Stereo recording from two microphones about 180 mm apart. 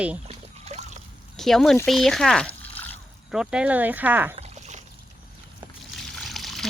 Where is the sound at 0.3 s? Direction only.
35° right (ahead or behind).